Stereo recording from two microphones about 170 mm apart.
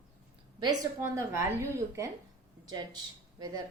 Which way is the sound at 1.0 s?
15° right (ahead or behind).